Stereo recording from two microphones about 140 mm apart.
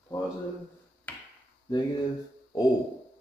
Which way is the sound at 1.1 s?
10° left (ahead or behind).